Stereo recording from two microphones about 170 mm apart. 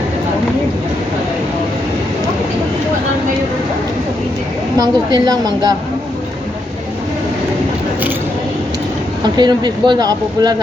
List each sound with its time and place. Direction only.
4.8 s speech: 20° right (ahead or behind)
9.4 s speech: 25° right (ahead or behind)